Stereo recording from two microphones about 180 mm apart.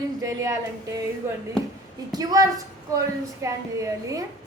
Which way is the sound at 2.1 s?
20° right (ahead or behind).